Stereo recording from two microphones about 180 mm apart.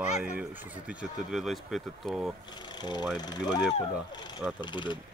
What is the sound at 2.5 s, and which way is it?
Speech, 25° left (ahead or behind).